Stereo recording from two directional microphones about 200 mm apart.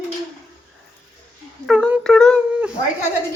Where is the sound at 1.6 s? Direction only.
5° right (ahead or behind).